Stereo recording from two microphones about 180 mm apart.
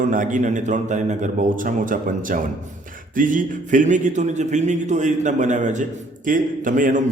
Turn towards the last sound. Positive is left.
turn(degrees=-45)  # may be behind; listen again after turning